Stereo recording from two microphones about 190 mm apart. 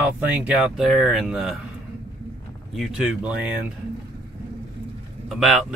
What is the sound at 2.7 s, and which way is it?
Speech, 5° right (ahead or behind).